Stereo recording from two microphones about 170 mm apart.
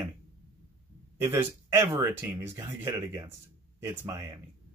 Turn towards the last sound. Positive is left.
turn(degrees=-15)  # may be behind; listen again after turning